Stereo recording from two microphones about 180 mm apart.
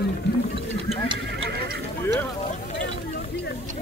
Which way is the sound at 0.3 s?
70° left (ahead or behind).